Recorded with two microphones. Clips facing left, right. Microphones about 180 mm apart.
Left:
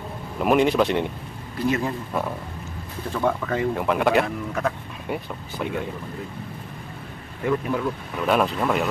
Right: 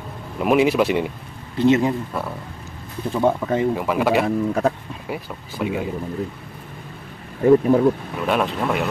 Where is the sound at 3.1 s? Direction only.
25° right (ahead or behind).